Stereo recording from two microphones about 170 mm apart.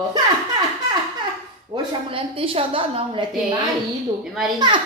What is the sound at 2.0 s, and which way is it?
Speech, 30° right (ahead or behind).